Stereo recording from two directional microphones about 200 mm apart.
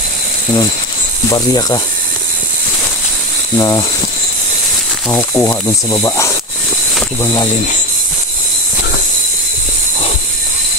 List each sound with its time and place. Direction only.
1.3 s speech: 20° left (ahead or behind)
3.5 s speech: 15° left (ahead or behind)
5.1 s speech: 10° left (ahead or behind)